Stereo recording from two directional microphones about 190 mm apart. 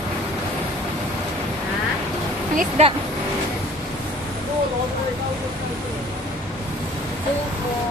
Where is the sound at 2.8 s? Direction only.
35° right (ahead or behind).